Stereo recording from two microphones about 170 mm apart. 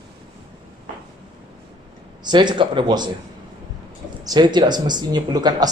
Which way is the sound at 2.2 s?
25° right (ahead or behind).